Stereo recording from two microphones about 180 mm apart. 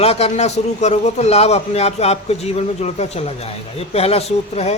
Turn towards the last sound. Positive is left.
turn(degrees=35)  # may be behind; listen again after turning